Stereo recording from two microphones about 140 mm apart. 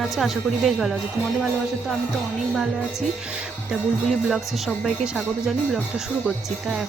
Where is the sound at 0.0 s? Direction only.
Centre (ahead or behind).